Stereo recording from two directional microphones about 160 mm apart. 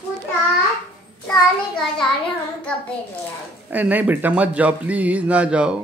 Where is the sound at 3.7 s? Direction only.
10° right (ahead or behind).